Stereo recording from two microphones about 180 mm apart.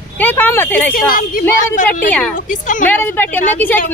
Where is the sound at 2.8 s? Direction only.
10° left (ahead or behind).